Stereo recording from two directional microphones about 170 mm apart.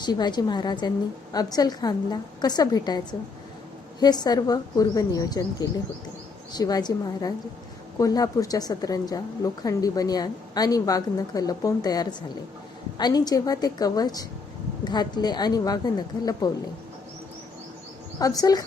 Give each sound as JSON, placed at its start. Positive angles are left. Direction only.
{"t": 0.0, "sound": "a woman's voice", "side_deg": 25}
{"t": 18.2, "sound": "a woman's voice", "side_deg": 20}